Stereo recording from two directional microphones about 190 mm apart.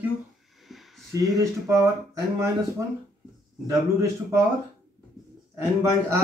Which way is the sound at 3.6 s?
15° right (ahead or behind).